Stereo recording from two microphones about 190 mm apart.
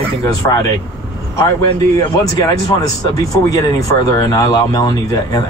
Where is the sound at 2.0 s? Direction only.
20° left (ahead or behind).